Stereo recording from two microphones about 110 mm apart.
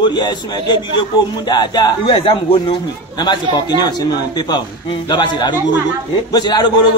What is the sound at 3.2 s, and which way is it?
A man's voice, 40° left (ahead or behind).